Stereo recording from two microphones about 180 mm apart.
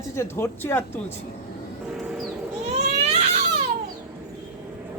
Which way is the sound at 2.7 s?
40° right (ahead or behind).